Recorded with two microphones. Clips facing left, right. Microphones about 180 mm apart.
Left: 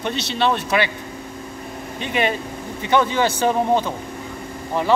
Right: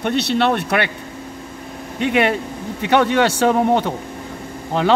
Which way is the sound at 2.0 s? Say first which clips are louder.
Right 5 dB; 70° right (ahead or behind).